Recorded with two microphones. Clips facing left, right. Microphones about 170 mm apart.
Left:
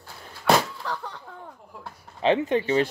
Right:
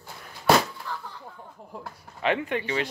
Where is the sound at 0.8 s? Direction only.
85° left.